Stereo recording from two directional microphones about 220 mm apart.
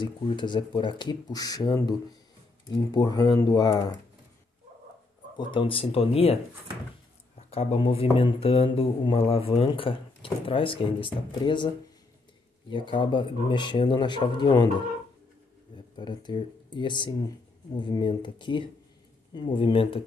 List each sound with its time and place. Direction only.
0.0 s speech: 20° left (ahead or behind)
5.4 s speech: 20° left (ahead or behind)
7.3 s speech: 25° left (ahead or behind)
16.0 s speech: 20° left (ahead or behind)